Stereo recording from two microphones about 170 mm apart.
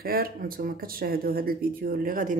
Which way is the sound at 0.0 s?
65° right (ahead or behind).